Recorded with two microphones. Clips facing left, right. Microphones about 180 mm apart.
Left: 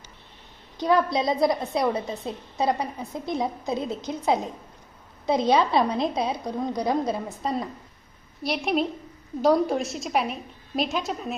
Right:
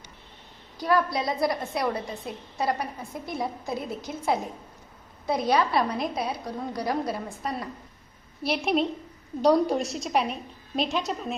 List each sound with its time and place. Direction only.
0.8 s a woman's voice: 20° left (ahead or behind)
8.4 s a woman's voice: centre (ahead or behind)